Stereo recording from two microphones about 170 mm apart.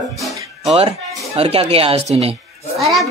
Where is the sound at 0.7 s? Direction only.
35° right (ahead or behind).